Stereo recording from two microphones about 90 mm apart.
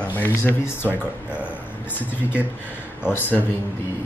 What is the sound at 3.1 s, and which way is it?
Speech, 25° left (ahead or behind).